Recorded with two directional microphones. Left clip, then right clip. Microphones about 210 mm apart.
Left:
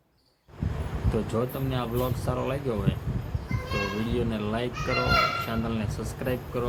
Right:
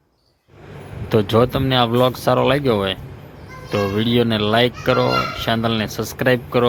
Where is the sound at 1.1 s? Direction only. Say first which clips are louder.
Right 14 dB; 40° right (ahead or behind).